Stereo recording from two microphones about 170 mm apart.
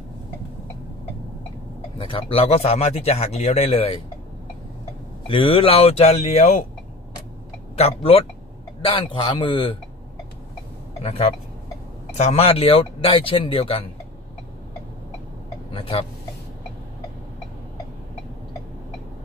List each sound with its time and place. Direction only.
2.0 s speech: 35° left (ahead or behind)
5.2 s speech: 30° left (ahead or behind)
7.7 s a man's voice: 35° left (ahead or behind)
11.0 s a man's voice: 35° left (ahead or behind)
15.7 s speech: 35° left (ahead or behind)